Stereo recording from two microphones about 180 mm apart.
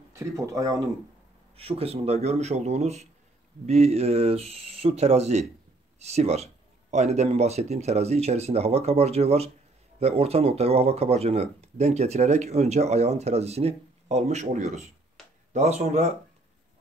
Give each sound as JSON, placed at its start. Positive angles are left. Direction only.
{"t": 0.1, "sound": "speech", "side_deg": -15}
{"t": 1.6, "sound": "speech", "side_deg": -35}